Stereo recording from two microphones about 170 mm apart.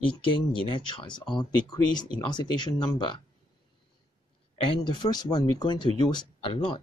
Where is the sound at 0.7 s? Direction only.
30° left (ahead or behind).